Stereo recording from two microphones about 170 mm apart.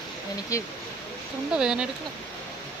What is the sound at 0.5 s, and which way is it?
Speech, 20° left (ahead or behind).